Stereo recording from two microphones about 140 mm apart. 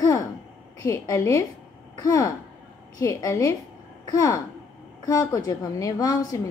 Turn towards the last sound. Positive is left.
turn(degrees=25)  # may be behind; listen again after turning